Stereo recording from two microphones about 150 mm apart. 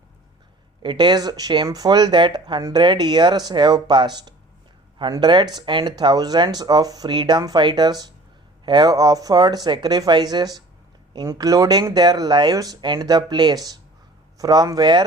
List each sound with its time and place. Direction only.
0.8 s speech: 30° right (ahead or behind)